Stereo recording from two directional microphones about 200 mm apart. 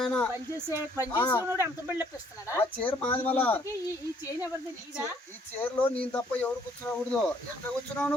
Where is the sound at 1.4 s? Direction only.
10° right (ahead or behind).